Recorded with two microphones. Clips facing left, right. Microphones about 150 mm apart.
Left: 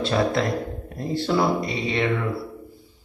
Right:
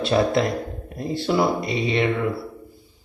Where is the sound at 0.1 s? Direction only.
20° right (ahead or behind).